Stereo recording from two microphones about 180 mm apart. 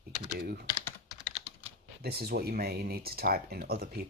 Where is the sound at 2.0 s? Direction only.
60° right (ahead or behind).